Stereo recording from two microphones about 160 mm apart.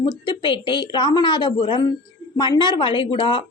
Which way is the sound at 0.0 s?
30° left (ahead or behind).